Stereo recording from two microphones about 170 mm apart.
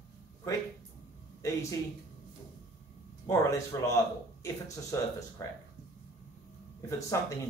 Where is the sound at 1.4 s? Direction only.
20° left (ahead or behind).